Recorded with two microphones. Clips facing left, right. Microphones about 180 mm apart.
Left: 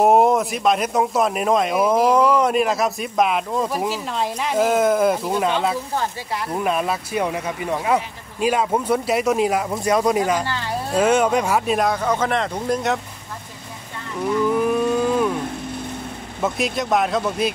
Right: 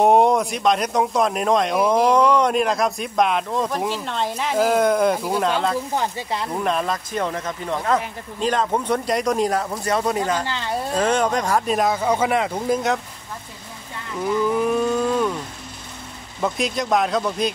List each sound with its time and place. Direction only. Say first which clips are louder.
0.0 s speech: even; centre (ahead or behind)
6.5 s speech: left 2 dB; 5° left (ahead or behind)
14.2 s cattle: left 1 dB; centre (ahead or behind)
16.3 s speech: even; centre (ahead or behind)